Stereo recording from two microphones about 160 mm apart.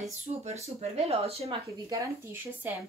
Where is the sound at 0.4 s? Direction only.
40° right (ahead or behind).